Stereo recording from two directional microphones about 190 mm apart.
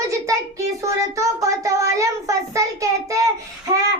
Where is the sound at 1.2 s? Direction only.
15° right (ahead or behind).